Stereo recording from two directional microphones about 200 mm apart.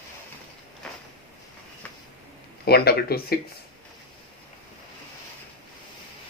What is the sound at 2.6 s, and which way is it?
Speech, 50° left (ahead or behind).